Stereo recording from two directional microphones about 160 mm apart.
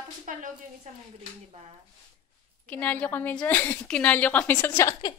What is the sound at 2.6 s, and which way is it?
A woman's voice, 10° left (ahead or behind).